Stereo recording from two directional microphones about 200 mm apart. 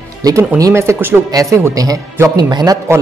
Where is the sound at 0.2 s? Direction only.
15° right (ahead or behind).